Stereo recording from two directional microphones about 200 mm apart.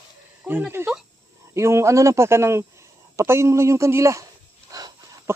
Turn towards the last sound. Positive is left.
turn(degrees=-15)  # may be behind; listen again after turning